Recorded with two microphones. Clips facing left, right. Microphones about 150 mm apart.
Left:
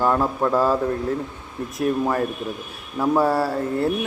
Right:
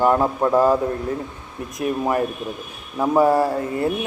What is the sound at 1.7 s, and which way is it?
Speech, 10° right (ahead or behind).